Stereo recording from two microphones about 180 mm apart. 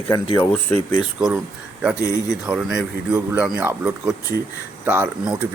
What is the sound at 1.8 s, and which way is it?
Speech, 5° right (ahead or behind).